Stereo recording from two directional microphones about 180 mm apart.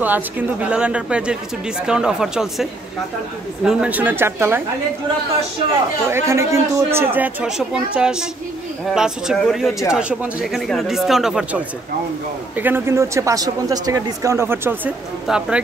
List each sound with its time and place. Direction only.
0.0 s speech: 10° right (ahead or behind)
6.0 s speech: 15° right (ahead or behind)